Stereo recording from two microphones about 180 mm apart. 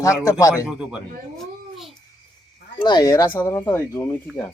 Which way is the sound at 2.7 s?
25° left (ahead or behind).